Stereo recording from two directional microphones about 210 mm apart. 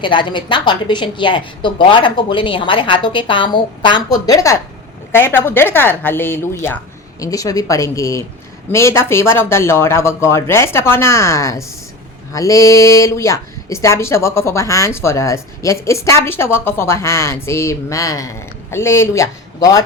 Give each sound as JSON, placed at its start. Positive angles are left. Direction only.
{"t": 0.0, "sound": "a woman's voice", "side_deg": 25}